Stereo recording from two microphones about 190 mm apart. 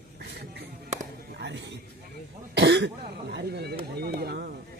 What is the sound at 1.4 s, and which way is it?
A man's voice, 70° right (ahead or behind).